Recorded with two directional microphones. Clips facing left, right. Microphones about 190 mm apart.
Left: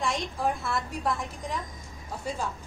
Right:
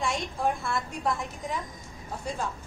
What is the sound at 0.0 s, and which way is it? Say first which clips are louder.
A woman's voice: even; centre (ahead or behind).